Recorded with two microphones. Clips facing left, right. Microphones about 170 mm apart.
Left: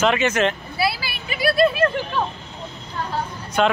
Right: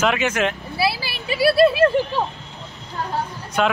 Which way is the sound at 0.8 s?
30° right (ahead or behind).